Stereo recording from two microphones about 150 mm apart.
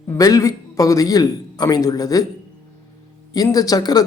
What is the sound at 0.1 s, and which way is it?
Speech, 20° left (ahead or behind).